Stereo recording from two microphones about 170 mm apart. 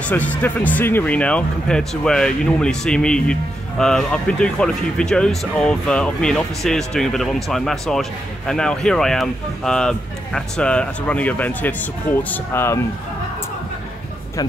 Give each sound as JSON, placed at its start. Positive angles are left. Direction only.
{"t": 0.0, "sound": "speech", "side_deg": 10}